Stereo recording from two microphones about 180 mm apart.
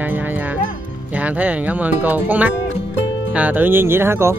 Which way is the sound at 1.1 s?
10° right (ahead or behind).